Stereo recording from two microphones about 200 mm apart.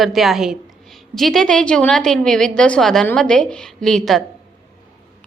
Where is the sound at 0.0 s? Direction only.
Centre (ahead or behind).